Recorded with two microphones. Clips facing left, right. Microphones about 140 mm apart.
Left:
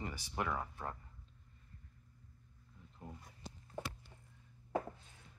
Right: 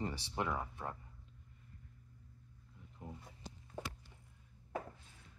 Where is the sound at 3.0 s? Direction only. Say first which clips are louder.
Right 1 dB; 15° right (ahead or behind).